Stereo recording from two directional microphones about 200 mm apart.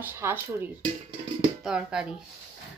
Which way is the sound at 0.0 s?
10° right (ahead or behind).